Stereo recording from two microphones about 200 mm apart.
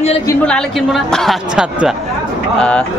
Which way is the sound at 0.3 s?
Centre (ahead or behind).